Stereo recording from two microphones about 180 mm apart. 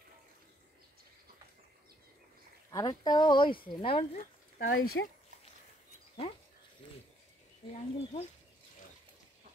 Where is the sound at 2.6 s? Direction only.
20° left (ahead or behind).